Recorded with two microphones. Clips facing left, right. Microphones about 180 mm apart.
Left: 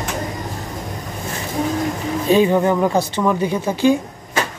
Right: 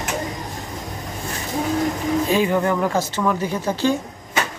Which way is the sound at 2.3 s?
20° left (ahead or behind).